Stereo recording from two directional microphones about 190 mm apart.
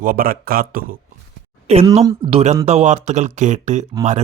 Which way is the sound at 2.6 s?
35° right (ahead or behind).